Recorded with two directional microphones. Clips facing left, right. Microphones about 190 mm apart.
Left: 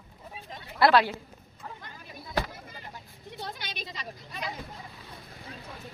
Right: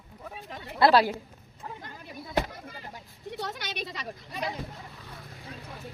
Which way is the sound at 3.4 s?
75° right (ahead or behind).